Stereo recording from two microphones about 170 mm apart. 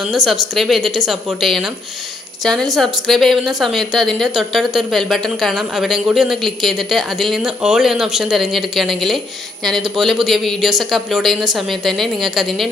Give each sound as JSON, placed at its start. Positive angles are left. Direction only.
{"t": 0.1, "sound": "a woman's voice", "side_deg": 0}